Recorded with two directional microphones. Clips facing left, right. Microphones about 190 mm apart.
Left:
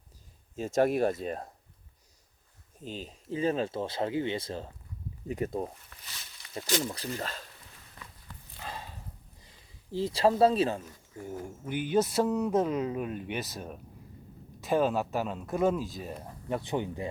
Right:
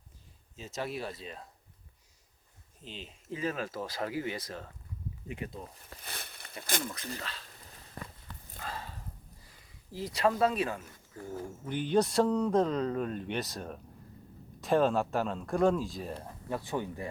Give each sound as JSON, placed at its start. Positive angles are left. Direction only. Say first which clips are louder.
{"t": 0.5, "sound": "speech", "louder": "left 11 dB", "side_deg": 50}
{"t": 2.8, "sound": "speech", "louder": "left 6 dB", "side_deg": 40}
{"t": 5.3, "sound": "speech", "louder": "left 9 dB", "side_deg": 45}
{"t": 6.1, "sound": "a sound", "louder": "right 7 dB", "side_deg": -55}
{"t": 6.8, "sound": "speech", "louder": "left 4 dB", "side_deg": 30}
{"t": 7.2, "sound": "speech", "louder": "left 6 dB", "side_deg": 45}
{"t": 8.0, "sound": "walk", "louder": "right 7 dB", "side_deg": -45}
{"t": 8.6, "sound": "a sound", "louder": "even", "side_deg": 15}
{"t": 9.9, "sound": "speech", "louder": "left 4 dB", "side_deg": 30}
{"t": 11.2, "sound": "speech", "louder": "left 1 dB", "side_deg": 15}
{"t": 16.5, "sound": "speech", "louder": "left 3 dB", "side_deg": 20}